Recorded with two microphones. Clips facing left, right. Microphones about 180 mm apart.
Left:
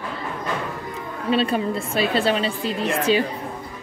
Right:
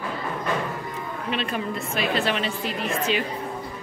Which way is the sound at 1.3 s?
30° left (ahead or behind).